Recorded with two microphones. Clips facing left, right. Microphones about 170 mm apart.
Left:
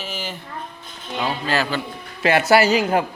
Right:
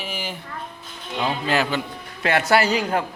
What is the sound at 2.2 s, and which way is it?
Speech, 5° left (ahead or behind).